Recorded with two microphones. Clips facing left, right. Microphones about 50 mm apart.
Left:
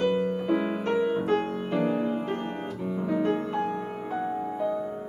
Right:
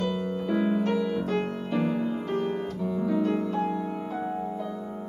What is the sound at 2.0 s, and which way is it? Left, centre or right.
Music, left.